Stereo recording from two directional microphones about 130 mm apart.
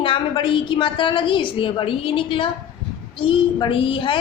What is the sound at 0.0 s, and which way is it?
A woman's voice, 40° left (ahead or behind).